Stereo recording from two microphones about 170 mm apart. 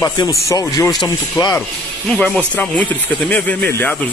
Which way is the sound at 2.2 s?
10° left (ahead or behind).